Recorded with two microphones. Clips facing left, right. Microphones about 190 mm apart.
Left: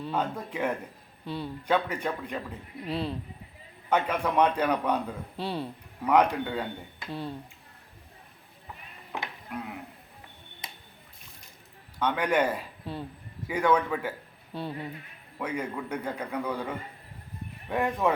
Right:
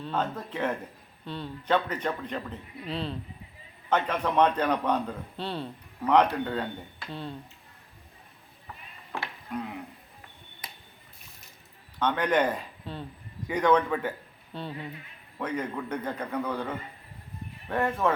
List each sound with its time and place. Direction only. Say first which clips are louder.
0.0 s a man's voice: even; 10° left (ahead or behind)
9.1 s a sound: even; 20° left (ahead or behind)
9.5 s speech: right 4 dB; 5° left (ahead or behind)
11.9 s a man's voice: right 1 dB; 10° left (ahead or behind)